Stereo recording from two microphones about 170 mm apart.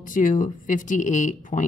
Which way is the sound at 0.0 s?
50° left (ahead or behind).